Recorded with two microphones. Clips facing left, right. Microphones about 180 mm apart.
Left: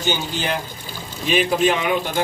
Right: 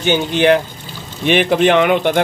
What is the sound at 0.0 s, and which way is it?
Speech, 70° right (ahead or behind).